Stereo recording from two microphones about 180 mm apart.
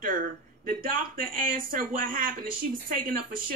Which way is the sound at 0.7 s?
50° right (ahead or behind).